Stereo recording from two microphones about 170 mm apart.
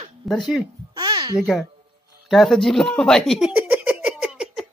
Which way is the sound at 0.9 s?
25° right (ahead or behind).